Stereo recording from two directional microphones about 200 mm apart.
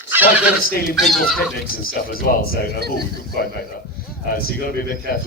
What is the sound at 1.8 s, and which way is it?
Speech, 50° left (ahead or behind).